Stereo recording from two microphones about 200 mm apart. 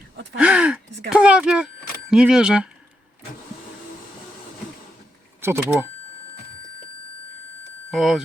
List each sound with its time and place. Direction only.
0.3 s speech: 5° right (ahead or behind)
5.4 s speech: 10° right (ahead or behind)
7.9 s speech: centre (ahead or behind)